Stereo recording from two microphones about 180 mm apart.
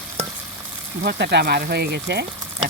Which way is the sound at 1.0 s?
65° right (ahead or behind).